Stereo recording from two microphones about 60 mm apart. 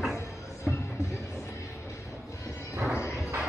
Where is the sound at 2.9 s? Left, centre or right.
Left.